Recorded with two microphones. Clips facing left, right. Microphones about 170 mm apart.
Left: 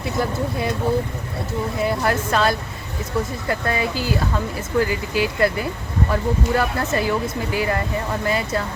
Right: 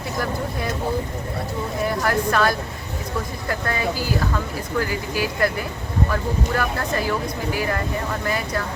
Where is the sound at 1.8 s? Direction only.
20° left (ahead or behind).